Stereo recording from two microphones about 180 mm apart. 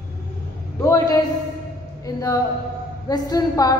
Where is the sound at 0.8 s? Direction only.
20° left (ahead or behind).